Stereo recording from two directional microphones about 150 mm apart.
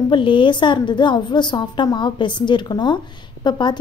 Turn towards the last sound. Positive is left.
turn(degrees=30)  # may be behind; listen again after turning